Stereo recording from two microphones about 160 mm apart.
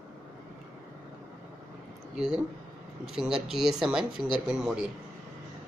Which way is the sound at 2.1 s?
5° right (ahead or behind).